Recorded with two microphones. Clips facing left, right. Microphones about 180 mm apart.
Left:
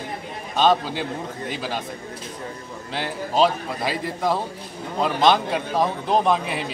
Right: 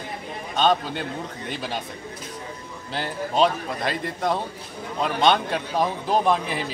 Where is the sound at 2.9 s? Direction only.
Centre (ahead or behind).